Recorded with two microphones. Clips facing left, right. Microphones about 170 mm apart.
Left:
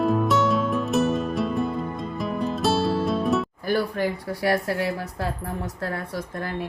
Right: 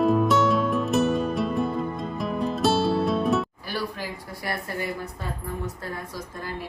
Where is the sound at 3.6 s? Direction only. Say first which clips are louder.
Left 8 dB; 55° left (ahead or behind).